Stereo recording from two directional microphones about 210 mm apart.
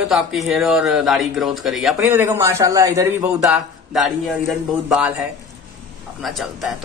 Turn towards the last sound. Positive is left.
turn(degrees=0)  # may be behind; listen again after turning